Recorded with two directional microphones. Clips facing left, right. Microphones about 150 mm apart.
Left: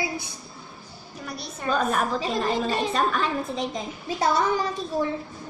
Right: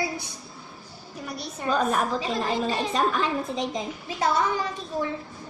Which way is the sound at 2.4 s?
Centre (ahead or behind).